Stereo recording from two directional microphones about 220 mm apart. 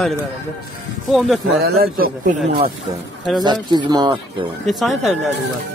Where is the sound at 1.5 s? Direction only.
45° right (ahead or behind).